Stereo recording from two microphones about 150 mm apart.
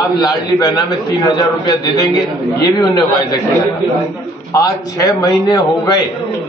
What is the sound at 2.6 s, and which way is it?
Speech, 25° left (ahead or behind).